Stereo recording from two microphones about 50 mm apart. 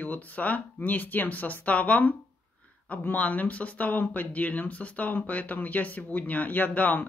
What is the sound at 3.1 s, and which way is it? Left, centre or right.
Speech, left.